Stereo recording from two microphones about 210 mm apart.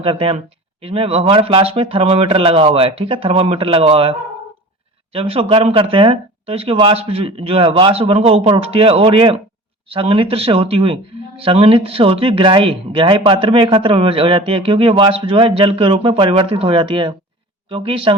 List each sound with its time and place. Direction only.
0.0 s speech: 25° right (ahead or behind)
5.1 s speech: 25° right (ahead or behind)